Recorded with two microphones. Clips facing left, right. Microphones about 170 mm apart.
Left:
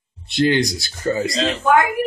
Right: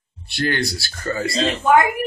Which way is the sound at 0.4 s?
20° left (ahead or behind).